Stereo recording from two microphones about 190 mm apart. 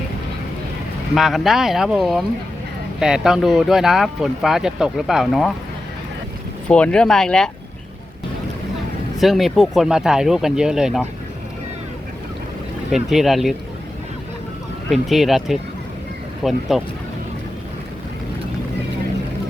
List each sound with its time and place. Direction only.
1.1 s speech: centre (ahead or behind)
6.7 s speech: 5° left (ahead or behind)
9.1 s speech: centre (ahead or behind)
12.9 s speech: centre (ahead or behind)
15.1 s speech: centre (ahead or behind)